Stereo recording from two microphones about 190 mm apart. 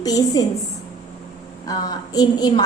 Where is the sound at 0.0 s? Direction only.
20° left (ahead or behind).